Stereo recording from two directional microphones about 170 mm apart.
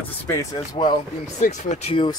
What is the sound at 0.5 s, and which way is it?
Speech, 25° left (ahead or behind).